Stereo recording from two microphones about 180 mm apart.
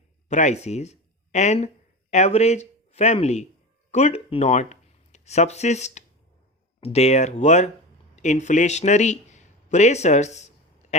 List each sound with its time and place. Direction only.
0.3 s speech: 40° left (ahead or behind)